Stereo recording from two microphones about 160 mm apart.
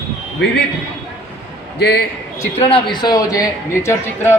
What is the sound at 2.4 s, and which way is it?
A man's voice, 35° left (ahead or behind).